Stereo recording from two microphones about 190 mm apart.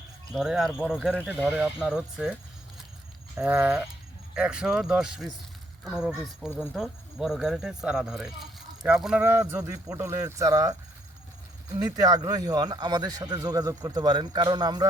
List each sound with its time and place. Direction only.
0.3 s speech: centre (ahead or behind)
3.3 s speech: 5° right (ahead or behind)
11.8 s a man's voice: 20° right (ahead or behind)